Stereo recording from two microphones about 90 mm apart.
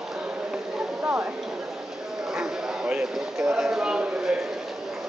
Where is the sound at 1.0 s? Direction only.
20° right (ahead or behind).